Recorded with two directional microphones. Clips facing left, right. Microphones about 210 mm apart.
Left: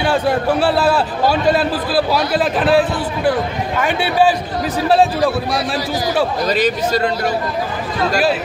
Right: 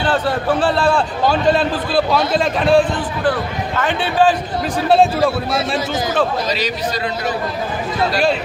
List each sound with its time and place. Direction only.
0.0 s a man's voice: 10° left (ahead or behind)
6.5 s a man's voice: 50° left (ahead or behind)